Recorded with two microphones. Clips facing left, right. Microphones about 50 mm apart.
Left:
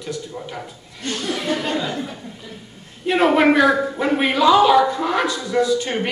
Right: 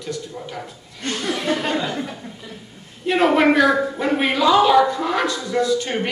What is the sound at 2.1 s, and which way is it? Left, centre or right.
Speech, centre.